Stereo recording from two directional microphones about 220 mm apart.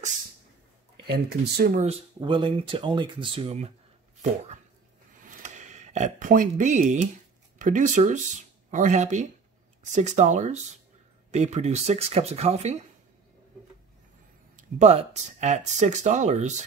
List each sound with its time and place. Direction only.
1.0 s speech: 45° right (ahead or behind); by 3.7 s 25° right (ahead or behind)
5.2 s a sound: 35° right (ahead or behind)
7.5 s speech: 35° right (ahead or behind)
14.6 s speech: 30° right (ahead or behind)